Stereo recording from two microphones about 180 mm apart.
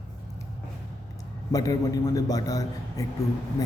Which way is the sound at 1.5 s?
20° left (ahead or behind).